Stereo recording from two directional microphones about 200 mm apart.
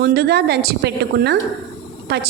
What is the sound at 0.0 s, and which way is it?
A woman's voice, 55° right (ahead or behind).